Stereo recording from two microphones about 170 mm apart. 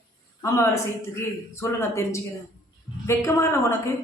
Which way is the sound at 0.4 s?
20° left (ahead or behind).